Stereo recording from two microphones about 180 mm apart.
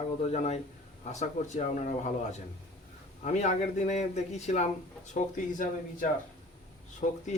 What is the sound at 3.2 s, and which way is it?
A man's voice, 40° left (ahead or behind).